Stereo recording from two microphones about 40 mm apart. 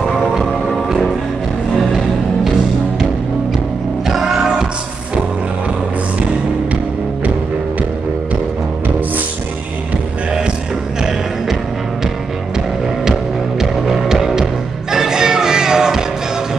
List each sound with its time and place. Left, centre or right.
0.8 s music: centre
4.1 s music: centre
11.0 s music: centre
13.6 s music: centre